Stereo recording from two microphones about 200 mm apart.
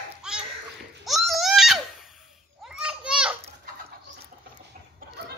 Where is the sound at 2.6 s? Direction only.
5° right (ahead or behind).